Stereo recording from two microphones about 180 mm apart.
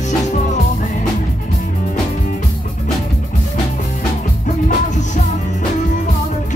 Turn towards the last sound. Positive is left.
turn(degrees=40)  # may be behind; listen again after turning